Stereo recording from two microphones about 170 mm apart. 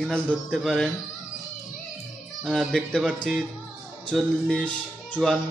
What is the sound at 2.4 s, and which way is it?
Speech, centre (ahead or behind).